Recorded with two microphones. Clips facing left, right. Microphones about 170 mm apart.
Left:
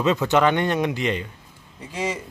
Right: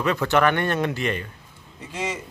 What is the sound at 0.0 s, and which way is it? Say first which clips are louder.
A man's voice: left 1 dB; 20° left (ahead or behind).